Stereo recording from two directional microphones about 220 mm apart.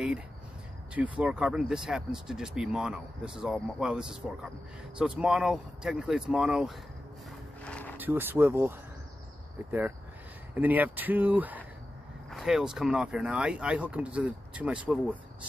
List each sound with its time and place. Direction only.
1.2 s speech: 5° right (ahead or behind)
7.6 s vehicle: 5° left (ahead or behind)
8.0 s speech: 10° right (ahead or behind)